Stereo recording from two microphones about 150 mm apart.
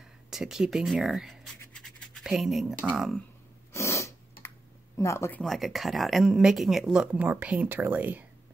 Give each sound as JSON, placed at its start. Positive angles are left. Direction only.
{"t": 0.3, "sound": "speech", "side_deg": -5}
{"t": 3.7, "sound": "a sound", "side_deg": 20}
{"t": 4.9, "sound": "speech", "side_deg": 20}
{"t": 5.4, "sound": "speech", "side_deg": 0}